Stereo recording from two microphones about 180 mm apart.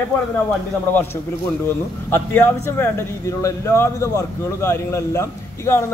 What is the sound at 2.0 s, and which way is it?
A man's voice, 15° left (ahead or behind).